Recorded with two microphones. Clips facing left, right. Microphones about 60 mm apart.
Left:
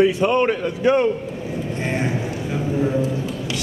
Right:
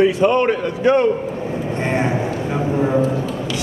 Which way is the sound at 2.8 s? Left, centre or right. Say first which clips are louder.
Right 3 dB; right.